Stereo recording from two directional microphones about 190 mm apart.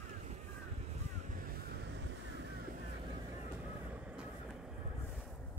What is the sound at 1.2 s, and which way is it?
Vehicle, 50° right (ahead or behind).